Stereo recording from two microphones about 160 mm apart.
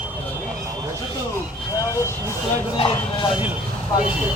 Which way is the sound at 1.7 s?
20° left (ahead or behind).